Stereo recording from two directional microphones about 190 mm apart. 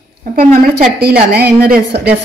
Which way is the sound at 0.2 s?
50° right (ahead or behind).